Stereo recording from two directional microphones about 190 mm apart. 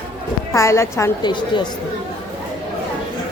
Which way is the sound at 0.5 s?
15° left (ahead or behind).